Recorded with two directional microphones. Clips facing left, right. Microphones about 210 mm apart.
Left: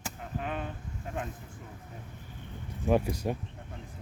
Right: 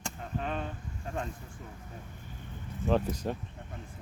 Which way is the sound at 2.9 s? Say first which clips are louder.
Left 2 dB; 10° left (ahead or behind).